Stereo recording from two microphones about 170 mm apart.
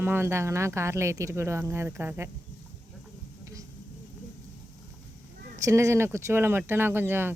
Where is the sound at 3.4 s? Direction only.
20° right (ahead or behind).